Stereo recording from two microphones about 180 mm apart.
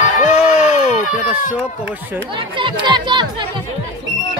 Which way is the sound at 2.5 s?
25° right (ahead or behind).